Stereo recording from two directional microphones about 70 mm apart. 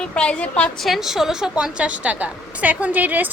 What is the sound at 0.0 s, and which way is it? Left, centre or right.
Speech, centre.